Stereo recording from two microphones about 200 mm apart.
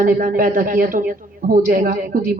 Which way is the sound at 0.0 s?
45° right (ahead or behind).